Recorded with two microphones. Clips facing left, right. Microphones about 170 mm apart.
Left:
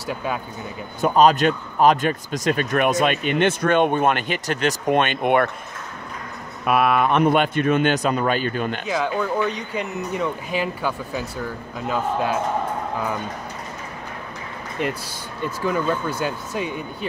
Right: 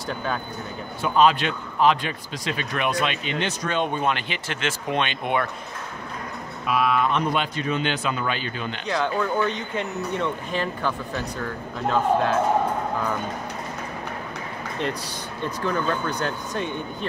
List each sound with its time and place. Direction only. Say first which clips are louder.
0.0 s speech: left 2 dB; 10° left (ahead or behind)
1.0 s a man's voice: left 4 dB; 40° left (ahead or behind)
6.6 s a man's voice: left 4 dB; 60° left (ahead or behind)
8.8 s speech: right 2 dB; 5° left (ahead or behind)
14.8 s speech: left 3 dB; 10° left (ahead or behind)